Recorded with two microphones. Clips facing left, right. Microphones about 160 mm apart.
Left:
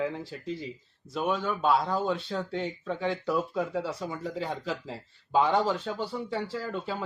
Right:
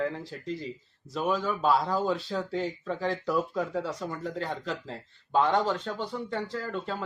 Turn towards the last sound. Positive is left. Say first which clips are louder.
# even
turn(degrees=10)  # may be behind; listen again after turning